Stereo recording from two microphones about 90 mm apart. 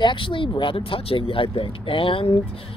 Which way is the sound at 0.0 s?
70° left (ahead or behind).